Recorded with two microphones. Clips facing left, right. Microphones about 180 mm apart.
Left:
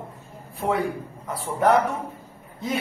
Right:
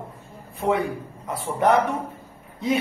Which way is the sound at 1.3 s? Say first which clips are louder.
Even; centre (ahead or behind).